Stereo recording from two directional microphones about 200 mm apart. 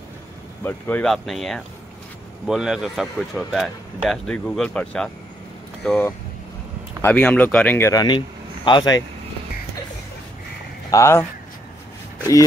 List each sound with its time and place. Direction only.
0.7 s speech: 10° left (ahead or behind)
10.9 s speech: 15° left (ahead or behind)